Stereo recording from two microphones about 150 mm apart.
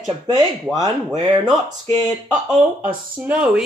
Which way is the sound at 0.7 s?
25° right (ahead or behind).